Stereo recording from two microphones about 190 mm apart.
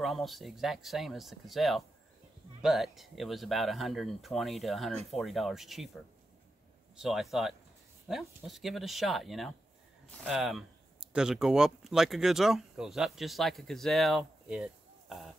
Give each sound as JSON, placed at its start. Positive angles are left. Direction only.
{"t": 0.0, "sound": "speech", "side_deg": 0}